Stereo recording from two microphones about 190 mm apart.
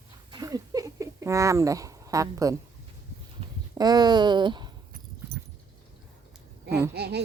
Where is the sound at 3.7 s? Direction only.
20° right (ahead or behind).